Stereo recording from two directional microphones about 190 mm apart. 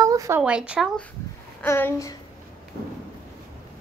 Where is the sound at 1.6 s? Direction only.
15° left (ahead or behind).